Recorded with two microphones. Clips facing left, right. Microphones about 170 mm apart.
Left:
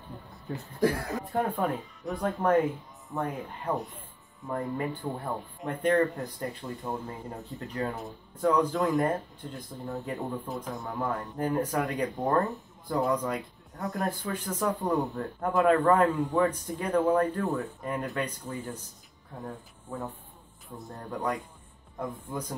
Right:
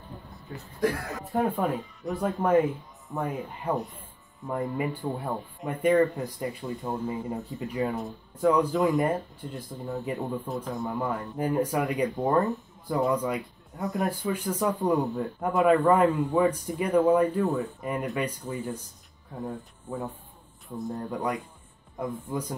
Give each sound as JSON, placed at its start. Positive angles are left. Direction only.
{"t": 1.3, "sound": "speech", "side_deg": 0}
{"t": 3.7, "sound": "music", "side_deg": 0}
{"t": 4.5, "sound": "speech", "side_deg": -10}